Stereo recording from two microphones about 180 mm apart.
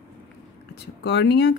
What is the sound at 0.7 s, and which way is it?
Speech, 70° left (ahead or behind).